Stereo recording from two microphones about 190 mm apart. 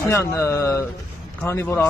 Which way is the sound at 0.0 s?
15° left (ahead or behind).